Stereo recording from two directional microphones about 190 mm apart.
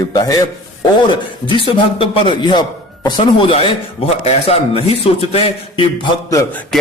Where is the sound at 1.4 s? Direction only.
30° left (ahead or behind).